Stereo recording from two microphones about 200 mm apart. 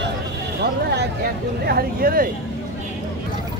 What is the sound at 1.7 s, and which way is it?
Speech, 50° right (ahead or behind).